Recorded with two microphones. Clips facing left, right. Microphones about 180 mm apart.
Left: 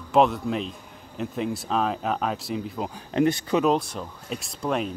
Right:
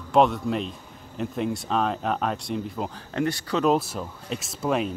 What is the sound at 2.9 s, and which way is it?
Speech, 20° left (ahead or behind).